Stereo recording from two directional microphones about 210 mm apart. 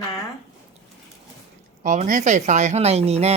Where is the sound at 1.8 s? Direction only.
35° right (ahead or behind).